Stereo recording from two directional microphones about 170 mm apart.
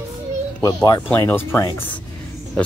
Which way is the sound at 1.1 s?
15° left (ahead or behind).